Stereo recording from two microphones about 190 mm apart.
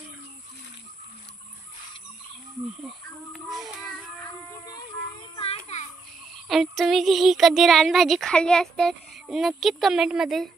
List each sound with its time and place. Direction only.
5.4 s children playing: 35° left (ahead or behind)
6.5 s speech: centre (ahead or behind)